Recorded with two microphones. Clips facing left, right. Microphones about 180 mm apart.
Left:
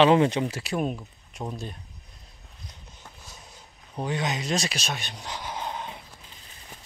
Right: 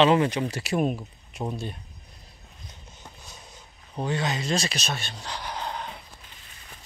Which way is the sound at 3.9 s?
10° left (ahead or behind).